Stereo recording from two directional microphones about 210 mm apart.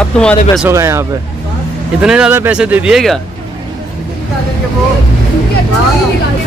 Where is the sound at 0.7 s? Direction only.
10° right (ahead or behind).